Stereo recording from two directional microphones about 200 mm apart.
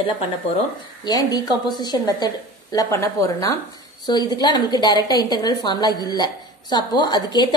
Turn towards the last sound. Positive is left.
turn(degrees=20)  # may be behind; listen again after turning